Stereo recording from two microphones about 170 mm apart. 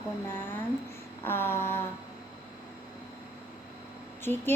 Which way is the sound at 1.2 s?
15° left (ahead or behind).